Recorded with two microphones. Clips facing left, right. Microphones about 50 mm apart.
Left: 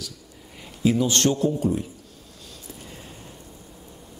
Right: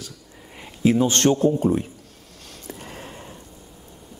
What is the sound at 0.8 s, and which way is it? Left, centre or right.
A man's voice, right.